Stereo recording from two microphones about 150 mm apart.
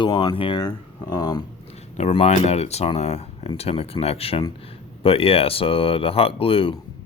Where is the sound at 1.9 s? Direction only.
45° left (ahead or behind).